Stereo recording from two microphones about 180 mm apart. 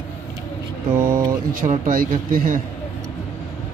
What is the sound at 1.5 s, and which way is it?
Speech, 50° right (ahead or behind).